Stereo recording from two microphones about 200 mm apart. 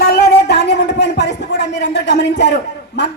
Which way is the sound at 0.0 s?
50° left (ahead or behind).